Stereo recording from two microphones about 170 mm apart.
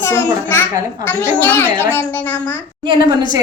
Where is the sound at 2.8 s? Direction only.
25° right (ahead or behind).